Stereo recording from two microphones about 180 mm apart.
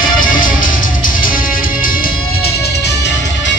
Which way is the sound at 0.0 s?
50° left (ahead or behind).